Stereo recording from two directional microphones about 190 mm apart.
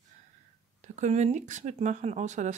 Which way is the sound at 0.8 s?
40° right (ahead or behind).